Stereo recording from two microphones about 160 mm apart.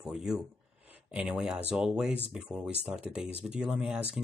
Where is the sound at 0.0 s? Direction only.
5° right (ahead or behind).